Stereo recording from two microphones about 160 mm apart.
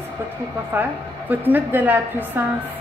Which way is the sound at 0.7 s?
10° right (ahead or behind).